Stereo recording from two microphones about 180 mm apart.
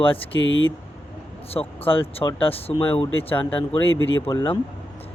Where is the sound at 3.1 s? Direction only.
10° left (ahead or behind).